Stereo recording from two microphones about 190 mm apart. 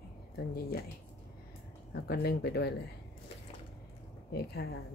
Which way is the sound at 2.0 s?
55° left (ahead or behind).